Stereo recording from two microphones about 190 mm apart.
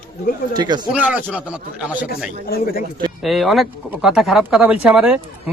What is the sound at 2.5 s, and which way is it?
Speech, 50° left (ahead or behind).